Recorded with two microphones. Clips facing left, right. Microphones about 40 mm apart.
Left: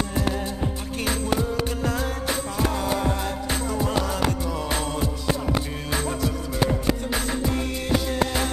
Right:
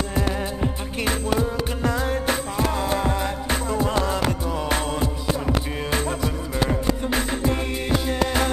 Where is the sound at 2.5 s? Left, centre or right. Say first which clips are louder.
Right 1 dB; centre.